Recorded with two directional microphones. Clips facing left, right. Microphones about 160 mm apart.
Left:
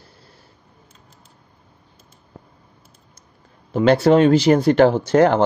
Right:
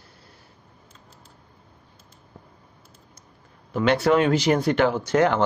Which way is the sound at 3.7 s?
30° left (ahead or behind).